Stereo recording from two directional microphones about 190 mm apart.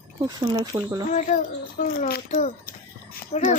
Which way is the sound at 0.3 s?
20° right (ahead or behind).